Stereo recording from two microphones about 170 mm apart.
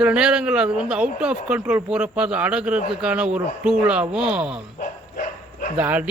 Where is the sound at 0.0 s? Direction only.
5° right (ahead or behind).